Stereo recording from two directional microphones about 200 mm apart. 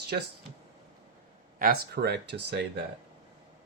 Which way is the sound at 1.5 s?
50° right (ahead or behind).